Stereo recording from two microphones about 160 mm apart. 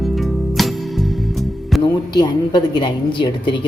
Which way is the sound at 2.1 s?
25° left (ahead or behind).